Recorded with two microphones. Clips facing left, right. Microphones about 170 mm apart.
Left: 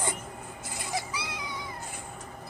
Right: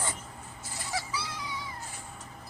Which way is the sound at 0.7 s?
15° left (ahead or behind).